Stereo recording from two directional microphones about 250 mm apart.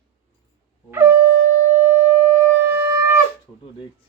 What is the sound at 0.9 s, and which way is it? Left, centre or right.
Shofar, centre.